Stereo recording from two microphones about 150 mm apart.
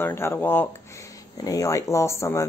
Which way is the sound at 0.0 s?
15° left (ahead or behind).